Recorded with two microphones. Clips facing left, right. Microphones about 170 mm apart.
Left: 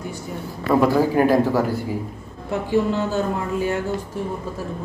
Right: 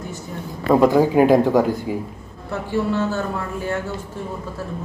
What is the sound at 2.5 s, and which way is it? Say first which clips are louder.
Speech: left 2 dB; 15° left (ahead or behind).